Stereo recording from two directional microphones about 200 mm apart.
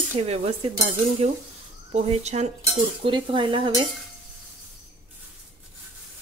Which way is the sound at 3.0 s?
25° right (ahead or behind).